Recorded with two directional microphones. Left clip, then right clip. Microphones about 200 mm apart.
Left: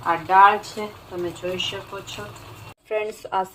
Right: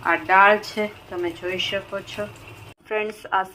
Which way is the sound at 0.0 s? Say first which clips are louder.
Even; 15° right (ahead or behind).